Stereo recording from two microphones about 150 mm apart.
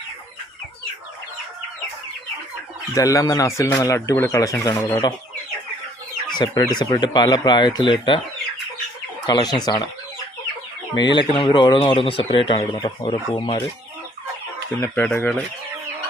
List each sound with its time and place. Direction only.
2.9 s speech: 20° left (ahead or behind)
6.3 s speech: 30° left (ahead or behind)
9.2 s speech: 25° left (ahead or behind)
11.0 s speech: 30° left (ahead or behind)
14.8 s speech: 15° left (ahead or behind)